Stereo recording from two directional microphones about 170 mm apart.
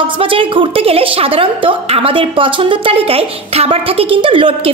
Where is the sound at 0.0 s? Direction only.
30° right (ahead or behind).